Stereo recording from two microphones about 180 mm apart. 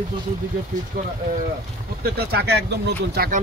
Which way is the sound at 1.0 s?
50° right (ahead or behind).